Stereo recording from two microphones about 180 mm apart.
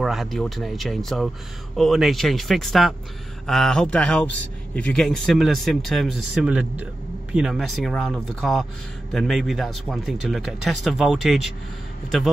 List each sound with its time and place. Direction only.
0.0 s a man's voice: centre (ahead or behind)